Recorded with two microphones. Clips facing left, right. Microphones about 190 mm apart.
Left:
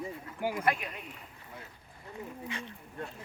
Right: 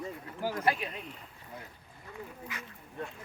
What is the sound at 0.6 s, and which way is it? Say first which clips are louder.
Speech: right 1 dB; 30° right (ahead or behind).